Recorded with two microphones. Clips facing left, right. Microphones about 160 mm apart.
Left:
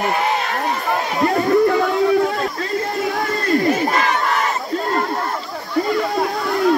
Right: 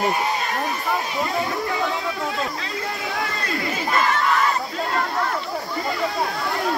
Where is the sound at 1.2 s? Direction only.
60° left (ahead or behind).